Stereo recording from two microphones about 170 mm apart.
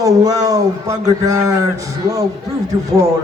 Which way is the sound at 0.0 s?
20° right (ahead or behind).